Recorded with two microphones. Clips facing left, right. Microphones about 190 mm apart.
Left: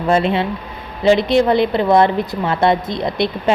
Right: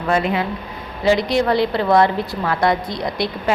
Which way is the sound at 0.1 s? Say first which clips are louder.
Left 3 dB; 25° left (ahead or behind).